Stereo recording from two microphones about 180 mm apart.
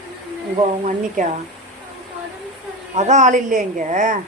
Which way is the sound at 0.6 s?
45° right (ahead or behind).